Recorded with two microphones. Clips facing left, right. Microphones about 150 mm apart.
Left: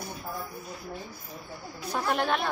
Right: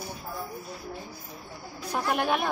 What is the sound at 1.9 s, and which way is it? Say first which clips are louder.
Speech: right 1 dB; 10° right (ahead or behind).